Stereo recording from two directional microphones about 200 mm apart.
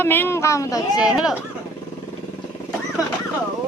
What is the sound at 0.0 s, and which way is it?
Speech, 10° left (ahead or behind).